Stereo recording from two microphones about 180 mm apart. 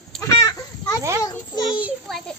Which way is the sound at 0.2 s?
15° left (ahead or behind).